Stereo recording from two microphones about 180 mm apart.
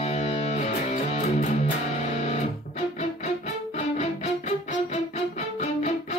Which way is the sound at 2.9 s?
35° left (ahead or behind).